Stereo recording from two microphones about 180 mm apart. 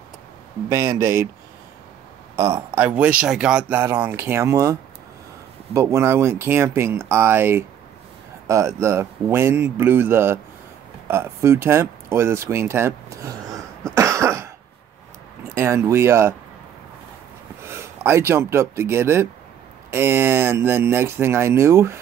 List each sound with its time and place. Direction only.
0.7 s speech: 15° right (ahead or behind)
2.3 s speech: 15° right (ahead or behind)
13.9 s cough: 15° right (ahead or behind)
15.5 s speech: 15° right (ahead or behind)
17.6 s speech: 15° right (ahead or behind)